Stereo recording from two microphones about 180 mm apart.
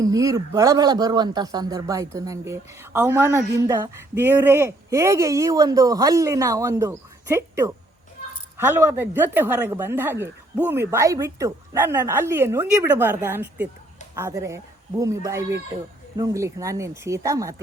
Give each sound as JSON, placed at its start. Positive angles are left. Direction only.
{"t": 0.0, "sound": "a man's voice", "side_deg": -20}